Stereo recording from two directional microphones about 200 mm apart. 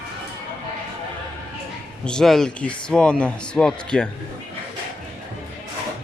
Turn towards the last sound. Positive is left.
turn(degrees=5)  # may be behind; listen again after turning